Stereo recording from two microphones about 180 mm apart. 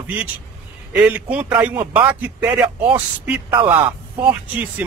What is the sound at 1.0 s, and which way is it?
Speech, 10° right (ahead or behind).